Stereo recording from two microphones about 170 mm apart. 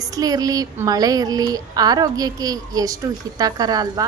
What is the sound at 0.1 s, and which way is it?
Speech, 20° right (ahead or behind).